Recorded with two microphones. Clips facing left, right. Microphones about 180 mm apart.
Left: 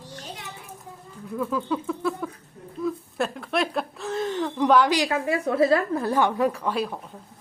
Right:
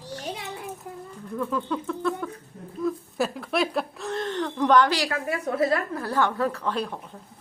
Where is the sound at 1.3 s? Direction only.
5° left (ahead or behind).